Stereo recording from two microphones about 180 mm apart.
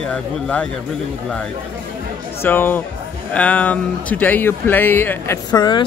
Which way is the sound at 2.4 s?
10° left (ahead or behind).